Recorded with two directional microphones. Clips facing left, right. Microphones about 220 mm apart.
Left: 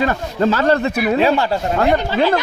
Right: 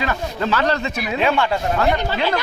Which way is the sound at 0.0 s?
45° left (ahead or behind).